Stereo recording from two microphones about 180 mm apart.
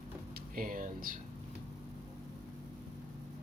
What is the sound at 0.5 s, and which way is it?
Speech, 50° right (ahead or behind).